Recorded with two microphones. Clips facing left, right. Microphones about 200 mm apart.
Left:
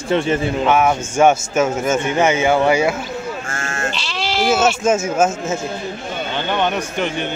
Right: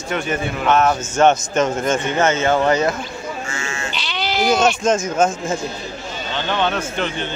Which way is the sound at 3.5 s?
50° left (ahead or behind).